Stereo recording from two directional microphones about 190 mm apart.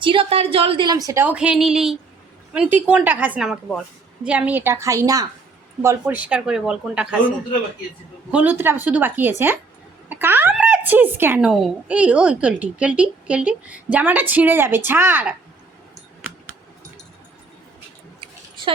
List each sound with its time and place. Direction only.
0.0 s a woman's voice: 25° right (ahead or behind); by 7.2 s 5° right (ahead or behind)
8.3 s a woman's voice: 10° right (ahead or behind)